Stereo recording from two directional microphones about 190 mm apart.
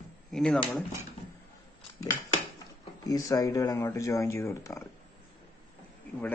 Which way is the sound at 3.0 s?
20° left (ahead or behind).